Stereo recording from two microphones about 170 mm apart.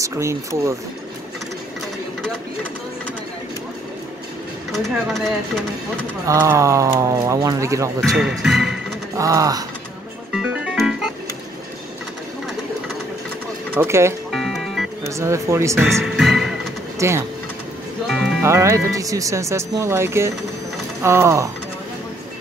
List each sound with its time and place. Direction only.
0.0 s speech: 15° right (ahead or behind)
4.7 s speech: centre (ahead or behind)
6.2 s speech: 15° right (ahead or behind)
8.0 s speech: centre (ahead or behind)
9.1 s a sound: 20° right (ahead or behind)
10.3 s music: 5° right (ahead or behind)
13.7 s speech: 15° right (ahead or behind)
14.3 s music: centre (ahead or behind)
15.0 s speech: 15° right (ahead or behind)
15.8 s music: centre (ahead or behind)
17.0 s speech: 15° right (ahead or behind)
18.0 s music: centre (ahead or behind)
18.4 s speech: 15° right (ahead or behind)